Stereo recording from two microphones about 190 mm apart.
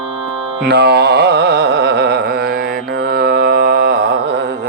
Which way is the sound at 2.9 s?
55° right (ahead or behind).